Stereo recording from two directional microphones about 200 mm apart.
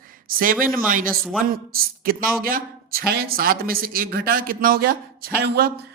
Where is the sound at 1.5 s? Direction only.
45° right (ahead or behind).